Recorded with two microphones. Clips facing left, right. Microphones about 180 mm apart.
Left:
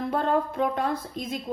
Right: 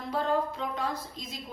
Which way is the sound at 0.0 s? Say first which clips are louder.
Left 4 dB; 55° left (ahead or behind).